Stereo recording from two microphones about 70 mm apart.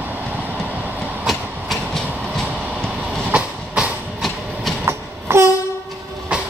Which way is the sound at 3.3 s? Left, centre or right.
Centre.